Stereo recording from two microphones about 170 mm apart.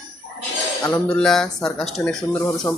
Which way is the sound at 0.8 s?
10° left (ahead or behind).